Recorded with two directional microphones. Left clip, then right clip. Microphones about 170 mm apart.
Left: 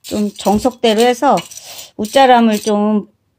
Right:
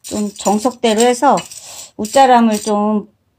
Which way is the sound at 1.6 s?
35° left (ahead or behind).